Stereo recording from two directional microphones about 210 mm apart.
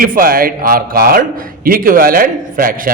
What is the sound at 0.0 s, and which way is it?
A man's voice, 45° right (ahead or behind).